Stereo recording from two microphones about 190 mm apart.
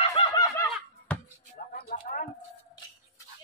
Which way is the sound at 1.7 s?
45° left (ahead or behind).